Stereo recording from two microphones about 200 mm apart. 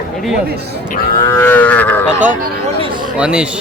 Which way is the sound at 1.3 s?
10° left (ahead or behind).